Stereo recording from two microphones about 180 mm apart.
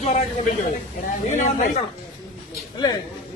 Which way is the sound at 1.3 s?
45° left (ahead or behind).